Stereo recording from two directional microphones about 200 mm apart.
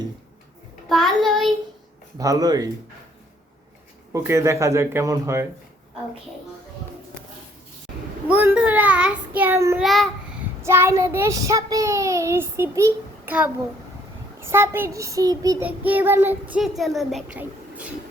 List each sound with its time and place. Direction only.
0.9 s a child's voice: centre (ahead or behind)
2.1 s child singing: 15° right (ahead or behind)
4.1 s child singing: 15° right (ahead or behind)
8.3 s child singing: 10° right (ahead or behind)
9.8 s a child's voice: centre (ahead or behind)
10.6 s child singing: 15° right (ahead or behind)